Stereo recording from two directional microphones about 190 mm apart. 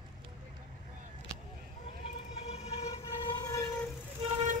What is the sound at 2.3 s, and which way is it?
Vehicle, 35° left (ahead or behind).